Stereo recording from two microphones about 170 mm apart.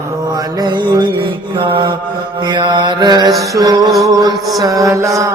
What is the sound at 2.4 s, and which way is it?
Mantra, 25° right (ahead or behind).